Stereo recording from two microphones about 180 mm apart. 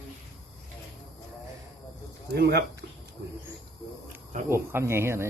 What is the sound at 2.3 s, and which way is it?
Speech, 65° right (ahead or behind).